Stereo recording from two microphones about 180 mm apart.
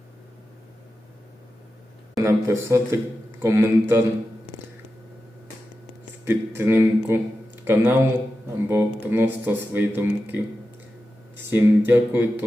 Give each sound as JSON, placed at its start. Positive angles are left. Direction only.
{"t": 2.1, "sound": "speech", "side_deg": -15}
{"t": 6.2, "sound": "speech", "side_deg": -15}
{"t": 11.5, "sound": "speech", "side_deg": -10}